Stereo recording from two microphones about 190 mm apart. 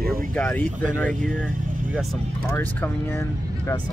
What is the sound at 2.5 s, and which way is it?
Speech, 10° left (ahead or behind).